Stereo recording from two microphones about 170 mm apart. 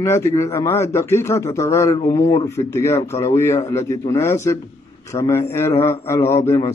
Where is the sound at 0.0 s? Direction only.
15° left (ahead or behind).